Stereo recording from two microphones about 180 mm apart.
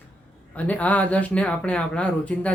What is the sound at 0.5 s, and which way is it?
Speech, 10° left (ahead or behind).